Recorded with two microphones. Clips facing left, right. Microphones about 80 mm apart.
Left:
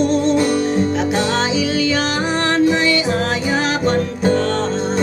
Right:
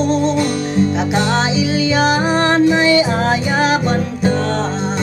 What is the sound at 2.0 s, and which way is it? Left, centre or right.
Music, centre.